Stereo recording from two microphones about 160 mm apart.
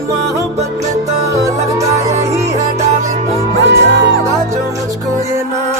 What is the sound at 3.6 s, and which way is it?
Music, 90° right.